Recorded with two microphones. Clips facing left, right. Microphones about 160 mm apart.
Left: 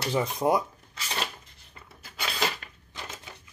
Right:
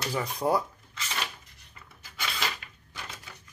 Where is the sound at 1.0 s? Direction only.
30° left (ahead or behind).